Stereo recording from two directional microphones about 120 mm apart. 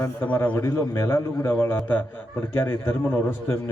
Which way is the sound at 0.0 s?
15° left (ahead or behind).